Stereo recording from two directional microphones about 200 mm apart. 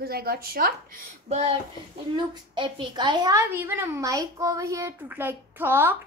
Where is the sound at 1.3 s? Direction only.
30° right (ahead or behind).